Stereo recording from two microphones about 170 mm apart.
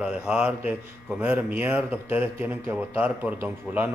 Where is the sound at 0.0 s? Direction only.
5° right (ahead or behind).